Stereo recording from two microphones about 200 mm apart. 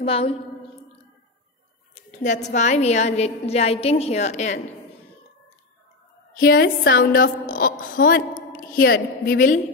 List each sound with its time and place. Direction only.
0.0 s a woman's voice: 30° left (ahead or behind)
2.0 s a woman's voice: 35° left (ahead or behind)
6.4 s a woman's voice: 50° left (ahead or behind)